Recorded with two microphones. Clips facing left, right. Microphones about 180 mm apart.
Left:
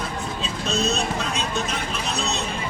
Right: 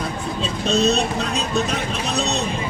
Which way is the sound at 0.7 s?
35° right (ahead or behind).